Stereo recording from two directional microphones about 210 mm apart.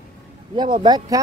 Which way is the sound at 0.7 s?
20° right (ahead or behind).